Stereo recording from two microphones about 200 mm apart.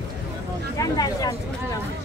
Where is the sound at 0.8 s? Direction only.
20° left (ahead or behind).